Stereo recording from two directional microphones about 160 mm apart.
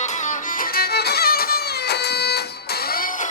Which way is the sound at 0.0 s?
50° left (ahead or behind).